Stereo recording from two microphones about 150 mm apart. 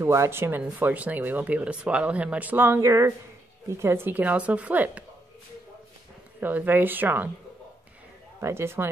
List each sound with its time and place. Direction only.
0.0 s speech: 20° right (ahead or behind)
6.4 s speech: 15° right (ahead or behind)
8.4 s speech: 20° right (ahead or behind)